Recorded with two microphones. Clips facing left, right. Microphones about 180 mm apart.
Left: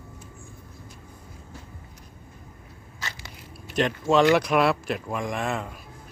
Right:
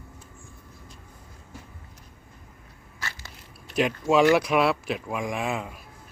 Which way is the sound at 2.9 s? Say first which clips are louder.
Even; 20° left (ahead or behind).